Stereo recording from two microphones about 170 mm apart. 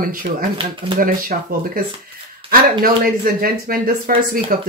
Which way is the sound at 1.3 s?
55° right (ahead or behind).